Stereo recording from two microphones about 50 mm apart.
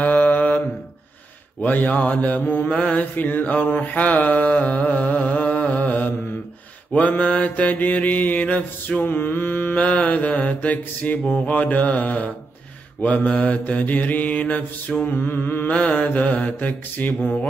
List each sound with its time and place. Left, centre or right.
0.0 s mantra: left
1.6 s mantra: left
5.1 s music: left
6.9 s mantra: left
9.8 s mantra: left
15.0 s mantra: left
15.7 s mantra: left